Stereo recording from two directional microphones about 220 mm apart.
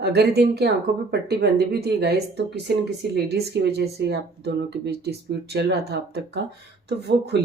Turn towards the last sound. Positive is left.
turn(degrees=-50)  # may be behind; listen again after turning